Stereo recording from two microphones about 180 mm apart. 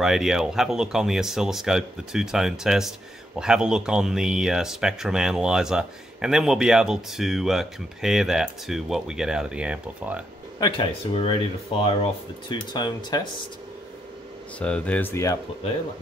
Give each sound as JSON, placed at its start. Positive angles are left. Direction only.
{"t": 0.0, "sound": "speech", "side_deg": 0}
{"t": 10.6, "sound": "speech", "side_deg": 30}
{"t": 14.6, "sound": "speech", "side_deg": 5}